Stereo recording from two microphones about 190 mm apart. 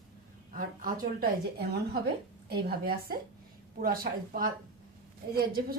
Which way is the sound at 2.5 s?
55° right (ahead or behind).